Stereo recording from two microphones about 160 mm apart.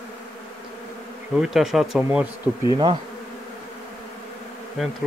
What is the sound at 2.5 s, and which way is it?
Bee, 5° right (ahead or behind).